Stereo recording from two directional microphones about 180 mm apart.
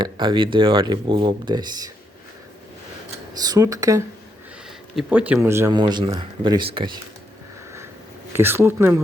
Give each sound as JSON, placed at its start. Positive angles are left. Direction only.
{"t": 0.0, "sound": "speech", "side_deg": -25}
{"t": 3.4, "sound": "speech", "side_deg": -20}
{"t": 4.9, "sound": "speech", "side_deg": -5}
{"t": 8.3, "sound": "speech", "side_deg": -15}